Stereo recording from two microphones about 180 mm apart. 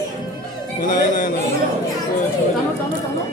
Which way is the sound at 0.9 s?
50° left (ahead or behind).